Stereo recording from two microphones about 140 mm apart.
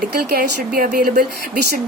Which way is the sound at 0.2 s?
90° right.